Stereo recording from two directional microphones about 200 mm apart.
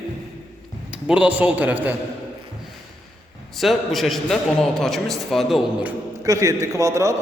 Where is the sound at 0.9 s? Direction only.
5° right (ahead or behind).